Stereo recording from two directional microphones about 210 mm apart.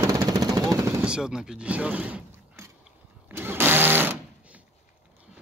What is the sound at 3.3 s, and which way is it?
Sewing machine, 10° right (ahead or behind).